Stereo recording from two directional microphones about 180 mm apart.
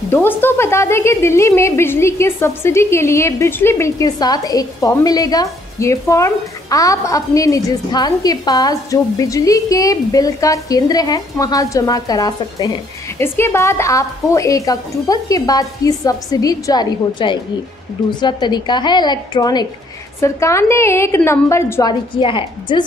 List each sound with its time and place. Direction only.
0.1 s a woman's voice: 10° left (ahead or behind)
22.1 s a woman's voice: 30° left (ahead or behind)